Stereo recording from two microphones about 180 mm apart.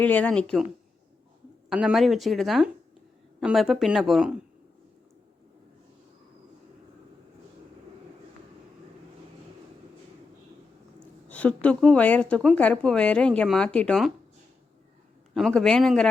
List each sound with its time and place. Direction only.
0.0 s speech: 10° left (ahead or behind)
1.7 s speech: 5° right (ahead or behind)
11.3 s speech: 10° left (ahead or behind)
15.4 s speech: centre (ahead or behind)